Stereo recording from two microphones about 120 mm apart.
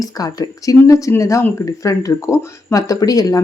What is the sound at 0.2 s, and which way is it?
Speech, 30° left (ahead or behind).